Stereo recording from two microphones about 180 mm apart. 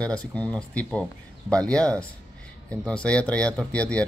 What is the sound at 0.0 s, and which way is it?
Speech, 5° left (ahead or behind).